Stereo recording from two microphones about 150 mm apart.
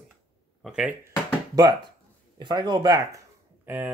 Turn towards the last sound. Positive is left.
turn(degrees=-10)  # may be behind; listen again after turning